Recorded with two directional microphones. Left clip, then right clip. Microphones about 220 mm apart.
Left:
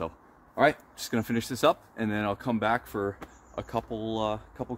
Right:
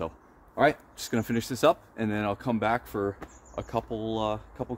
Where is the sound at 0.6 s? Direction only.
Centre (ahead or behind).